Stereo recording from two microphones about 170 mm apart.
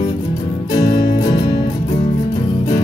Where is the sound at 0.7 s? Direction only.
25° left (ahead or behind).